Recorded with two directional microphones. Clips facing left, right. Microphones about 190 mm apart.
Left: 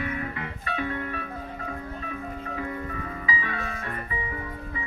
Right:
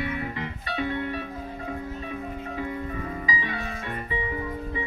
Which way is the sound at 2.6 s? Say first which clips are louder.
Right 2 dB; 25° right (ahead or behind).